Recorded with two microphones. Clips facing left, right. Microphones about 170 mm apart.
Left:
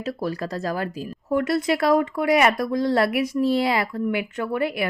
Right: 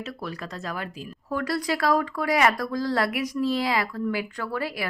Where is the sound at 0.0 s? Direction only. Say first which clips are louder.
Left 7 dB; 35° left (ahead or behind).